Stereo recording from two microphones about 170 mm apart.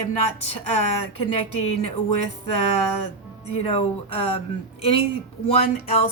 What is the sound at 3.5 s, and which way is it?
Speech, 35° left (ahead or behind).